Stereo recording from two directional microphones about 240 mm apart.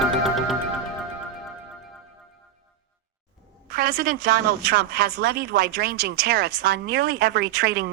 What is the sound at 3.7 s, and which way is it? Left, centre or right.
A woman's voice, right.